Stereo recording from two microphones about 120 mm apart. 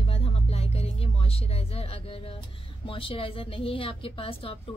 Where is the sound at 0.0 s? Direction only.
55° left (ahead or behind).